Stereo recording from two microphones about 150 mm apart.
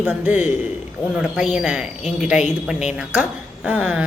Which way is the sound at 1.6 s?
5° right (ahead or behind).